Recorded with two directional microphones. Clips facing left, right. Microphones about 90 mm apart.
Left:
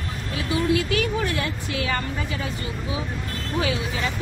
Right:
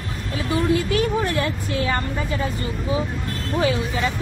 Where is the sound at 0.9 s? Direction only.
35° right (ahead or behind).